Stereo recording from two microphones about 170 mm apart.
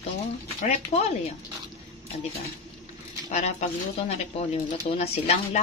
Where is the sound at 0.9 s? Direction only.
40° left (ahead or behind).